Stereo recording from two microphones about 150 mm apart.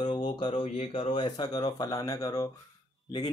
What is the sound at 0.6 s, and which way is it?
Speech, 40° left (ahead or behind).